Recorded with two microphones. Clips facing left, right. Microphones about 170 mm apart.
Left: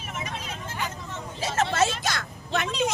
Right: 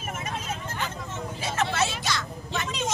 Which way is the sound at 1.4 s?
45° left (ahead or behind).